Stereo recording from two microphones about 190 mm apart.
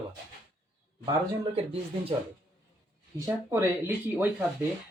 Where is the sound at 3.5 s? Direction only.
10° right (ahead or behind).